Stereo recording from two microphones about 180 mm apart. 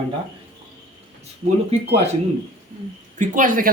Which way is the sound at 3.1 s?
45° right (ahead or behind).